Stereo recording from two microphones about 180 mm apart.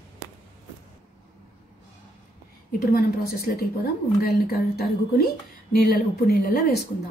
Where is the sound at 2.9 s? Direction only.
55° left (ahead or behind).